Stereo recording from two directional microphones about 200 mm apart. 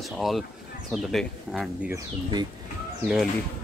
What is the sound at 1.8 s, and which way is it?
Speech, 20° right (ahead or behind).